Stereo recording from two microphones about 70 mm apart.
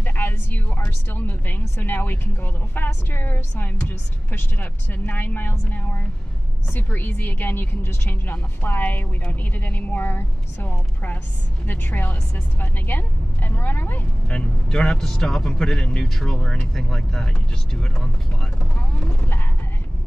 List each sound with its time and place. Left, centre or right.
0.0 s a sound: left
1.8 s speech: left
14.3 s speech: centre